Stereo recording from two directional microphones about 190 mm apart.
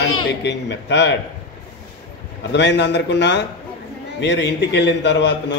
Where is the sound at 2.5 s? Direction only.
65° left (ahead or behind).